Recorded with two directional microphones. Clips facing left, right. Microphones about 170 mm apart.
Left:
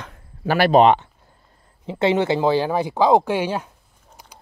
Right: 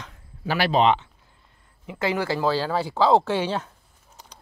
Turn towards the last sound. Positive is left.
turn(degrees=10)  # may be behind; listen again after turning